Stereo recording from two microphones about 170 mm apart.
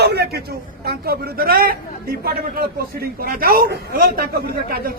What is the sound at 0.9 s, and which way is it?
A man's voice, 60° right (ahead or behind).